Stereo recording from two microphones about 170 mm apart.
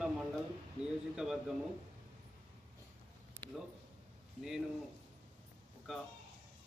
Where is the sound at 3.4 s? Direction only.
15° right (ahead or behind).